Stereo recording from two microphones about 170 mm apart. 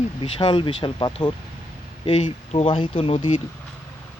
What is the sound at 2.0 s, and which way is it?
Speech, 40° left (ahead or behind).